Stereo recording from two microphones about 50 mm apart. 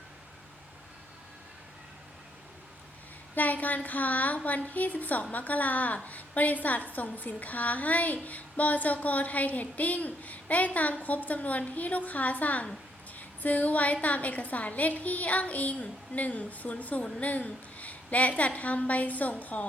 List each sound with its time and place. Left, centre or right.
3.3 s a woman's voice: left